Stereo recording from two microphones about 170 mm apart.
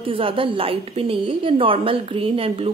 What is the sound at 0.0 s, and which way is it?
A woman's voice, 30° right (ahead or behind).